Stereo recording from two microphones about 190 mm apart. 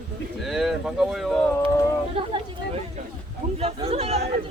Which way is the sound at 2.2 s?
25° right (ahead or behind).